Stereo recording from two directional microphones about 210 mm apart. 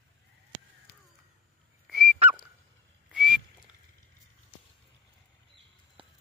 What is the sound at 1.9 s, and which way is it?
Dog, centre (ahead or behind).